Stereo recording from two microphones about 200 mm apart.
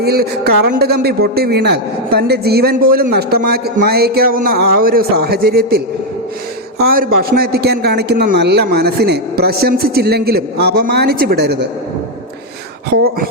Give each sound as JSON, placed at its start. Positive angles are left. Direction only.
{"t": 0.0, "sound": "a man's voice", "side_deg": -55}